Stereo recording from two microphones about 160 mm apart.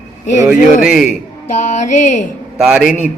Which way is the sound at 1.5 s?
50° left (ahead or behind).